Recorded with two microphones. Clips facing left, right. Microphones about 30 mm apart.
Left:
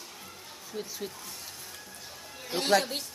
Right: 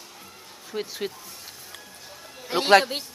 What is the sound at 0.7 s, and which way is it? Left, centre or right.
Speech, right.